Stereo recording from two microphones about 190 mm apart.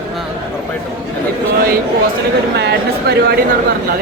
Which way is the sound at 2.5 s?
60° right (ahead or behind).